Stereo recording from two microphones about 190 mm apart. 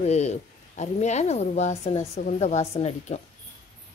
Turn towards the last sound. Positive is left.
turn(degrees=35)  # may be behind; listen again after turning